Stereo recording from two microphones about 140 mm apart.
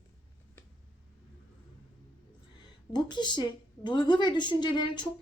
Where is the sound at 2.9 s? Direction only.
30° left (ahead or behind).